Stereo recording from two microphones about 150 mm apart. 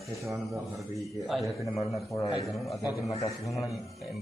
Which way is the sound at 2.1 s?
20° left (ahead or behind).